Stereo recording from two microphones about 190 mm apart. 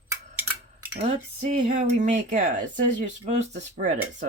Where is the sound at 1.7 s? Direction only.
40° right (ahead or behind).